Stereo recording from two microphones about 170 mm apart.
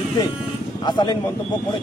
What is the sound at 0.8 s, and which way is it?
Speech, 25° left (ahead or behind).